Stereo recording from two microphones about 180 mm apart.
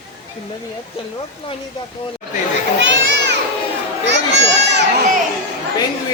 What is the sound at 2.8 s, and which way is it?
Children playing, 80° right.